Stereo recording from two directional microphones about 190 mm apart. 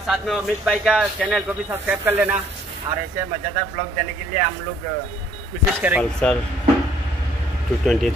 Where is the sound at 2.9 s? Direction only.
25° right (ahead or behind).